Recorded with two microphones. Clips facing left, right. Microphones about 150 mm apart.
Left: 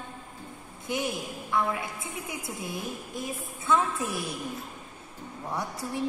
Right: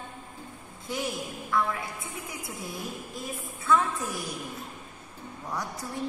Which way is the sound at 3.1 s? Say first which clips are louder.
Left 2 dB; 20° left (ahead or behind).